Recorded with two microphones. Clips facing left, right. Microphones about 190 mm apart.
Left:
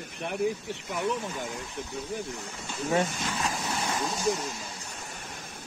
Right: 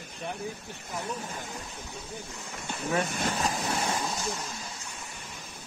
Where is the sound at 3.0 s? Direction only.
60° right (ahead or behind).